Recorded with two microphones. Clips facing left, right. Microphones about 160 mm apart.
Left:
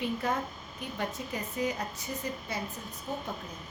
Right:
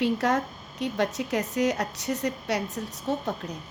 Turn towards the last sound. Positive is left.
turn(degrees=-80)